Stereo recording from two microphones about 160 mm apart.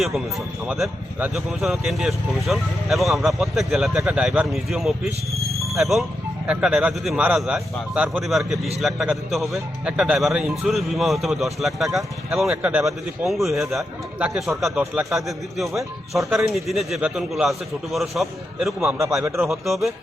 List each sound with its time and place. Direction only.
0.0 s speech: centre (ahead or behind)
5.5 s a sound: centre (ahead or behind)
6.5 s speech: 5° right (ahead or behind)
19.2 s speech: 20° right (ahead or behind)
19.5 s speech: centre (ahead or behind)